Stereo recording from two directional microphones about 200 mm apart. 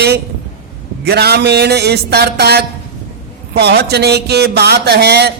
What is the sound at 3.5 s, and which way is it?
Speech, 55° right (ahead or behind).